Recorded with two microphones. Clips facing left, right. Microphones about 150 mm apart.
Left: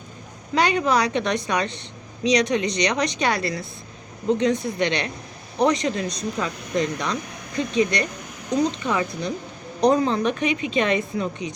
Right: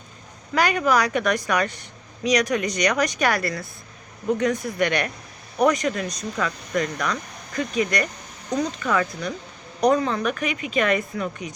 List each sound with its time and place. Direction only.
0.5 s a woman's voice: 25° left (ahead or behind)